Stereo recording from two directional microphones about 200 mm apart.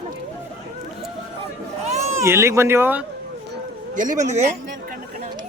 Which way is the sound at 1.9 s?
35° right (ahead or behind).